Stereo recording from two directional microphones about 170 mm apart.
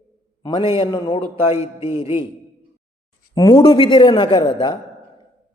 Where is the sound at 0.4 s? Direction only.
30° left (ahead or behind).